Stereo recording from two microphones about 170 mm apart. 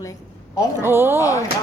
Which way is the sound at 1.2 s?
20° left (ahead or behind).